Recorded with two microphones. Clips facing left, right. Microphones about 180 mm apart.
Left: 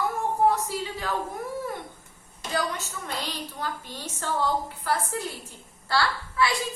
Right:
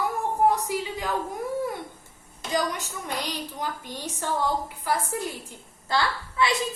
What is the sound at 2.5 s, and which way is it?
A woman's voice, 15° right (ahead or behind).